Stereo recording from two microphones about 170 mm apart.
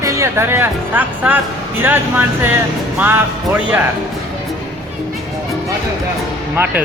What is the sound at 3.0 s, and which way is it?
Speech, 10° right (ahead or behind).